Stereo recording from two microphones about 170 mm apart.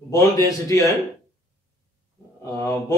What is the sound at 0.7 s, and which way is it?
Speech, 20° left (ahead or behind).